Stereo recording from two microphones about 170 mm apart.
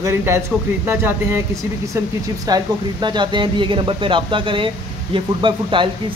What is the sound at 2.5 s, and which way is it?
Speech, 20° right (ahead or behind).